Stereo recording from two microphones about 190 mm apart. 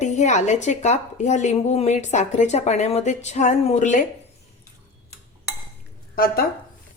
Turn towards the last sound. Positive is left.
turn(degrees=50)  # may be behind; listen again after turning